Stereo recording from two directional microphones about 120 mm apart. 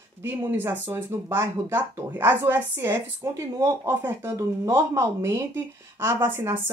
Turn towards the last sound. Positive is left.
turn(degrees=-20)  # may be behind; listen again after turning